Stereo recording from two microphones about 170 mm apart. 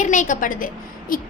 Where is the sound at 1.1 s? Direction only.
55° left (ahead or behind).